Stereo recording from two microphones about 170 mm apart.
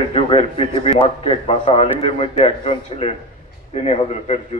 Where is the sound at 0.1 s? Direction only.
35° left (ahead or behind).